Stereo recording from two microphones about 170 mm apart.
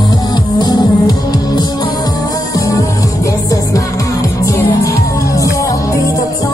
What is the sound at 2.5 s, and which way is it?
Music, 20° left (ahead or behind).